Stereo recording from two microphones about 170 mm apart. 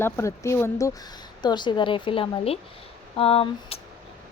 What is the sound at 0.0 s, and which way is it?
A woman's voice, 15° left (ahead or behind).